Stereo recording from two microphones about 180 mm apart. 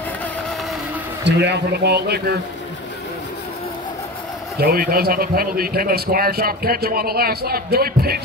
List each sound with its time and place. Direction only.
1.2 s a man's voice: 70° right (ahead or behind)
4.6 s speech: 55° right (ahead or behind)